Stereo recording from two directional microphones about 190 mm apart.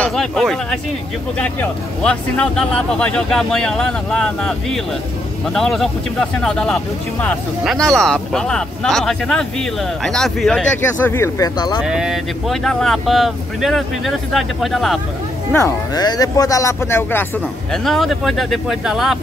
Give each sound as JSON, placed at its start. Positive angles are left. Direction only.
{"t": 0.0, "sound": "speech", "side_deg": 0}
{"t": 11.8, "sound": "speech", "side_deg": -5}
{"t": 15.5, "sound": "speech", "side_deg": 15}
{"t": 17.8, "sound": "speech", "side_deg": 0}